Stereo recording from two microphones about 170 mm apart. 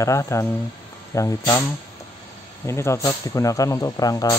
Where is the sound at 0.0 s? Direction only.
20° left (ahead or behind).